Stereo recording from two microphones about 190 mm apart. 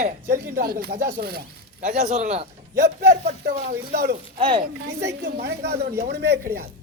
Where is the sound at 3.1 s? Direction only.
50° right (ahead or behind).